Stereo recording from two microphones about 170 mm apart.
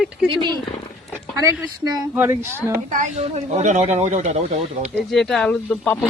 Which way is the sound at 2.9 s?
45° right (ahead or behind).